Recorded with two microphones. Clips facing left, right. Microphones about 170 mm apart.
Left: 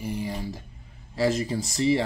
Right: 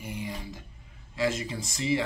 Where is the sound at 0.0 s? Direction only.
35° left (ahead or behind).